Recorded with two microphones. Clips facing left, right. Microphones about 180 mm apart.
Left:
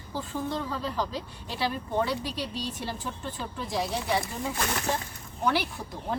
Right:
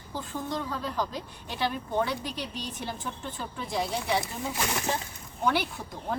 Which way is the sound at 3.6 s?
Centre (ahead or behind).